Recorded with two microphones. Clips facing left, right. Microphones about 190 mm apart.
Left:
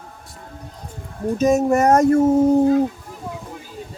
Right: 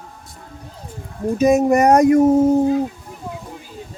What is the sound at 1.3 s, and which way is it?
Speech, 15° right (ahead or behind).